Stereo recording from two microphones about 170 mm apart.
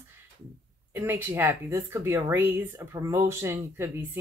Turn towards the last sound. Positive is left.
turn(degrees=-15)  # may be behind; listen again after turning